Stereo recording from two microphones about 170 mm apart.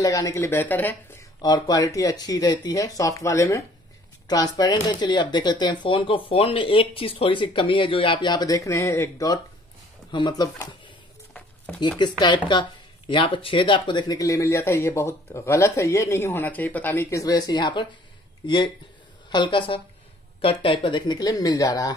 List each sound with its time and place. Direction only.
0.0 s speech: 20° left (ahead or behind)
1.4 s speech: 20° left (ahead or behind)
4.8 s speech: 25° left (ahead or behind)
11.3 s a sound: 5° left (ahead or behind)
12.0 s speech: 25° left (ahead or behind)